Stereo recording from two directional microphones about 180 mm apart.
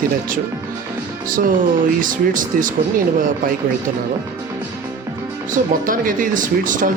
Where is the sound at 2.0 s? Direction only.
45° right (ahead or behind).